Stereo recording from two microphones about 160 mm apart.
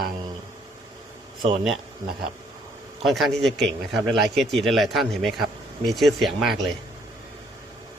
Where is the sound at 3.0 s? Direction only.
Centre (ahead or behind).